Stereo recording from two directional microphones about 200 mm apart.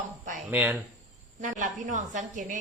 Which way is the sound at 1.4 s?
40° right (ahead or behind).